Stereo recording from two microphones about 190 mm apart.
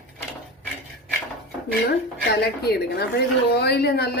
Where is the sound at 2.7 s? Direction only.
55° left (ahead or behind).